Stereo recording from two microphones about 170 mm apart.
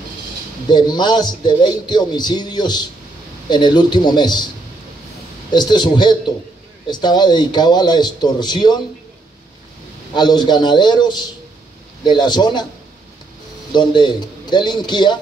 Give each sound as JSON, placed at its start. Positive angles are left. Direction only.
{"t": 0.7, "sound": "a man's voice", "side_deg": 25}
{"t": 5.5, "sound": "a man's voice", "side_deg": 25}
{"t": 10.1, "sound": "a man's voice", "side_deg": 25}
{"t": 13.7, "sound": "speech", "side_deg": 25}